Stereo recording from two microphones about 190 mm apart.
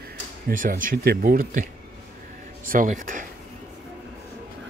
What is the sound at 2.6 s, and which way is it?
Speech, 45° right (ahead or behind).